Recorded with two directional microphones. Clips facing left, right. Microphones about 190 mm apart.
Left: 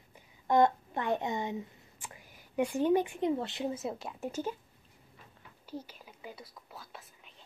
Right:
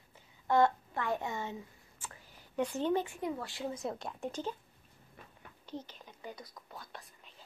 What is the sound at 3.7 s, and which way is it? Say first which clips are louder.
Speech: left 2 dB; 5° left (ahead or behind).